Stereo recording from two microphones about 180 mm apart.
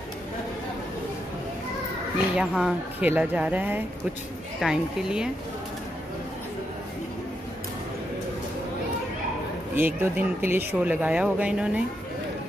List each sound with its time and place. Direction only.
2.3 s speech: 5° right (ahead or behind)
9.8 s speech: 10° right (ahead or behind)